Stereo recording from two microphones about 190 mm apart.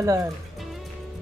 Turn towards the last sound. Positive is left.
turn(degrees=-15)  # may be behind; listen again after turning